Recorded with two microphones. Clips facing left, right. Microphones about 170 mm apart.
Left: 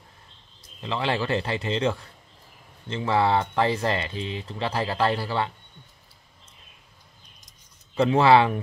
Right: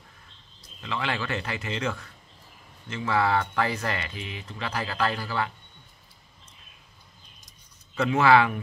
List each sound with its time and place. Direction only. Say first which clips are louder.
0.7 s speech: left 4 dB; 30° left (ahead or behind)
7.9 s speech: left 3 dB; 30° left (ahead or behind)